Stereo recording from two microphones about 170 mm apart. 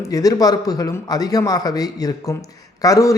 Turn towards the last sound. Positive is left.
turn(degrees=20)  # may be behind; listen again after turning